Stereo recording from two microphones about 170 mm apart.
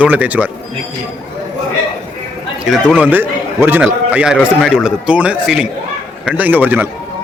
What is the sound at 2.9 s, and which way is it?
A man's voice, 10° right (ahead or behind).